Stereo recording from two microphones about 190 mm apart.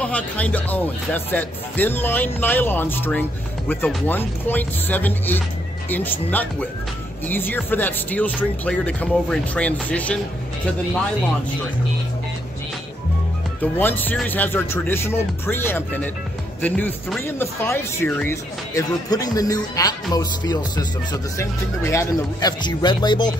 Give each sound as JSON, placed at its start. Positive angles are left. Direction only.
{"t": 0.0, "sound": "speech", "side_deg": 5}
{"t": 13.6, "sound": "speech", "side_deg": 10}